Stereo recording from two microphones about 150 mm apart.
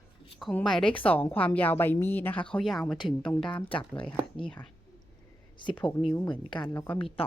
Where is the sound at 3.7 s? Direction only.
35° left (ahead or behind).